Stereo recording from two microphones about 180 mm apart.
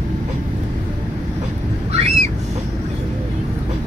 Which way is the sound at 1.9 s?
35° right (ahead or behind).